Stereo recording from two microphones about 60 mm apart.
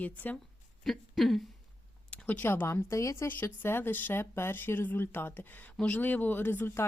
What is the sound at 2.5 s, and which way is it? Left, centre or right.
Speech, left.